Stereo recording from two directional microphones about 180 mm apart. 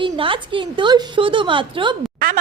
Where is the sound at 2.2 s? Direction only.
55° right (ahead or behind).